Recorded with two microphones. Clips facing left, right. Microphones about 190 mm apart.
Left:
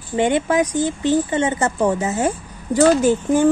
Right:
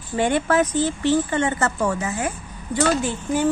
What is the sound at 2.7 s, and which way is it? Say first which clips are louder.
Speech: left 7 dB; 40° left (ahead or behind).